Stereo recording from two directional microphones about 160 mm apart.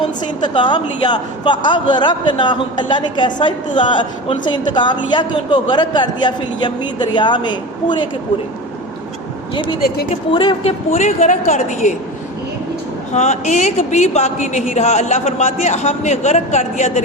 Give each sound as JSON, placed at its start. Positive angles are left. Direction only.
{"t": 0.5, "sound": "a man's voice", "side_deg": 30}
{"t": 10.3, "sound": "a man's voice", "side_deg": 30}
{"t": 10.9, "sound": "speech", "side_deg": 45}
{"t": 13.1, "sound": "speech", "side_deg": 45}